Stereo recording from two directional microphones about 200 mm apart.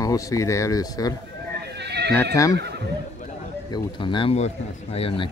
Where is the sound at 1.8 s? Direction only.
55° right (ahead or behind).